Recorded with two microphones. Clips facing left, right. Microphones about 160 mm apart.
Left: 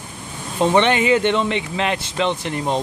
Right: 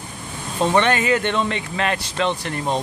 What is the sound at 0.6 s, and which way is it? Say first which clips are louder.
Speech: left 2 dB; 15° left (ahead or behind).